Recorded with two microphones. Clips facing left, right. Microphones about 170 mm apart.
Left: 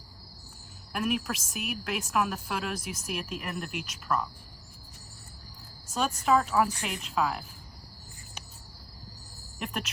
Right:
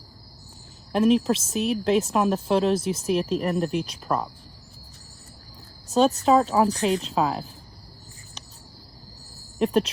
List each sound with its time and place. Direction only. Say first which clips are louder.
0.9 s speech: right 11 dB; 25° right (ahead or behind)
5.9 s speech: right 7 dB; 30° right (ahead or behind)
9.6 s speech: right 14 dB; 35° right (ahead or behind)